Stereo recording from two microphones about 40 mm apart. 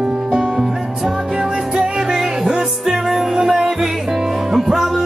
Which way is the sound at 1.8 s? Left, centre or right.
Centre.